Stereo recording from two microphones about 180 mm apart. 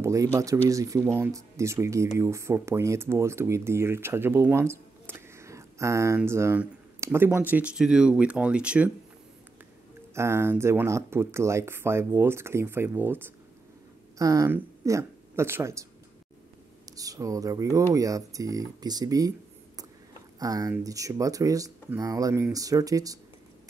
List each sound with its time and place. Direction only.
0.0 s speech: 15° right (ahead or behind)
10.1 s speech: 15° right (ahead or behind)
16.9 s speech: 20° right (ahead or behind)
20.3 s speech: 20° right (ahead or behind)